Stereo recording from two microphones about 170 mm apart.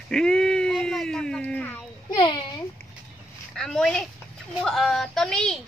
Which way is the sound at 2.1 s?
25° left (ahead or behind).